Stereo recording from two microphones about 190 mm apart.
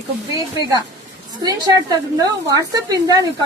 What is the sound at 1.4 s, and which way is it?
Speech, 20° right (ahead or behind).